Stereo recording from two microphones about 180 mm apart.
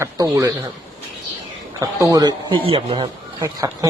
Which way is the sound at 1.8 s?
20° right (ahead or behind).